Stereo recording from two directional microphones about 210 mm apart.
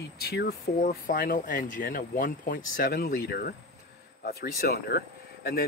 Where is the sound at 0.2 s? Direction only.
50° left (ahead or behind).